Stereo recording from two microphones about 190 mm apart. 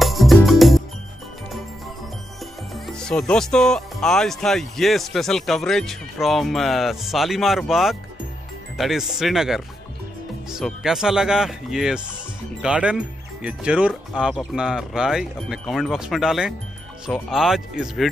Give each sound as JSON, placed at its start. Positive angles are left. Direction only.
{"t": 0.0, "sound": "music", "side_deg": 0}
{"t": 2.7, "sound": "speech", "side_deg": 5}